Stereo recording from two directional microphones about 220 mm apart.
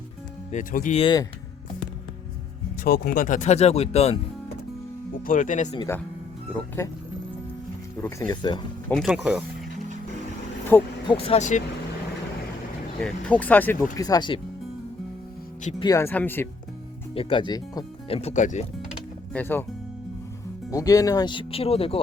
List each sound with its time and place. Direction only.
0.5 s speech: 35° left (ahead or behind)
2.8 s speech: 45° left (ahead or behind); by 4.2 s 30° left (ahead or behind)
5.2 s speech: 35° left (ahead or behind)
8.0 s speech: 15° left (ahead or behind)
8.9 s speech: centre (ahead or behind)
10.7 s speech: 10° left (ahead or behind)
11.1 s speech: 25° left (ahead or behind)
13.0 s speech: 5° left (ahead or behind); by 14.4 s 20° left (ahead or behind)
15.8 s speech: 15° left (ahead or behind)
17.2 s speech: 25° left (ahead or behind)
18.2 s speech: 30° left (ahead or behind)
19.3 s speech: 10° left (ahead or behind)
20.7 s speech: 15° left (ahead or behind)